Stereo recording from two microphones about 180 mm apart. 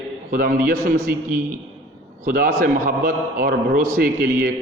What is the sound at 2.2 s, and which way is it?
A man's voice, 55° right (ahead or behind).